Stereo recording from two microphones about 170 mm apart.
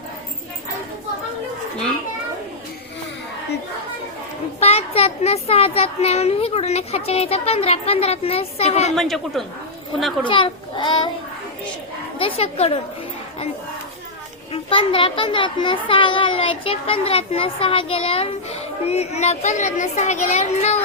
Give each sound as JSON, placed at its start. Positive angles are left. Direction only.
{"t": 4.6, "sound": "a child's voice", "side_deg": 35}
{"t": 9.0, "sound": "a man's voice", "side_deg": 0}
{"t": 10.2, "sound": "a child's voice", "side_deg": 30}
{"t": 12.2, "sound": "a child's voice", "side_deg": 35}
{"t": 14.5, "sound": "a child's voice", "side_deg": 30}